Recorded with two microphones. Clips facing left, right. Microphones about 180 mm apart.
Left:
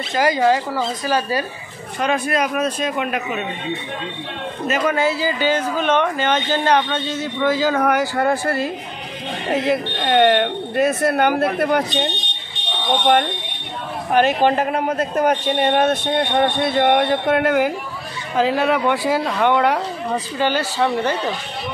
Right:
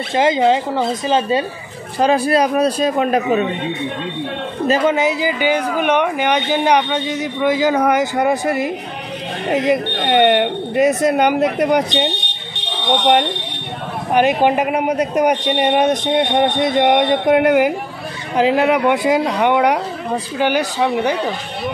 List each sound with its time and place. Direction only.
0.1 s speech: 25° right (ahead or behind)
2.0 s speech: 35° right (ahead or behind)
4.6 s speech: 30° right (ahead or behind)
4.9 s speech: 15° right (ahead or behind)
12.9 s speech: 20° right (ahead or behind)